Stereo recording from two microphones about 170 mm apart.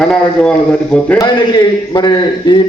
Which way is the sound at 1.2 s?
25° left (ahead or behind).